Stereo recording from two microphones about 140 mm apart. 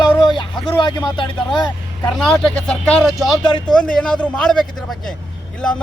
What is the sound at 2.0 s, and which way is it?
Speech, centre (ahead or behind).